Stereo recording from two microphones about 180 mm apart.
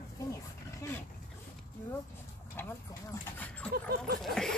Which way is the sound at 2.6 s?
10° left (ahead or behind).